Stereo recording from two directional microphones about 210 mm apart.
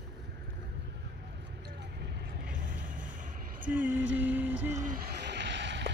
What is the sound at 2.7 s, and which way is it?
Vehicle, 40° right (ahead or behind).